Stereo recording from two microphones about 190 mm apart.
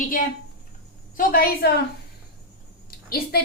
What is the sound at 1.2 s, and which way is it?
Speech, 50° left (ahead or behind).